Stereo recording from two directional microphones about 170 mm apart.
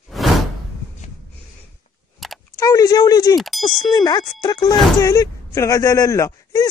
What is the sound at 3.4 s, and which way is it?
Speech, centre (ahead or behind).